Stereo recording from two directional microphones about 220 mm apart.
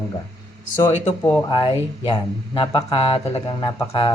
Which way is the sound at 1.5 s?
20° left (ahead or behind).